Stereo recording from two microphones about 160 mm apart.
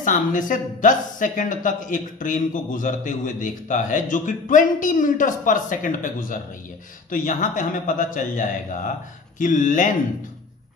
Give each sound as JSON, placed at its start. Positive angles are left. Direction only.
{"t": 0.0, "sound": "a man's voice", "side_deg": 55}